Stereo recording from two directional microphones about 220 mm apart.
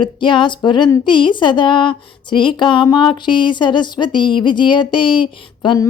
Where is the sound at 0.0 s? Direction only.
20° left (ahead or behind).